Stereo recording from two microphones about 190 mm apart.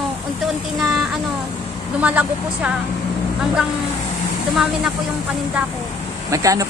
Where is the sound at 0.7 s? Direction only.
Centre (ahead or behind).